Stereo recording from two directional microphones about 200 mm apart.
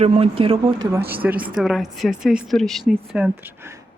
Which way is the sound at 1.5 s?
Centre (ahead or behind).